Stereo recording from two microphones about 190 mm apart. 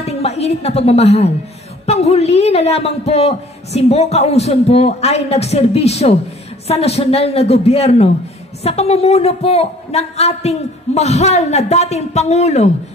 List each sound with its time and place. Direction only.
0.0 s a woman's voice: 35° left (ahead or behind)